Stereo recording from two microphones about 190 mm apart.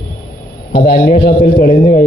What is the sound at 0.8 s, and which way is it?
Speech, 50° left (ahead or behind).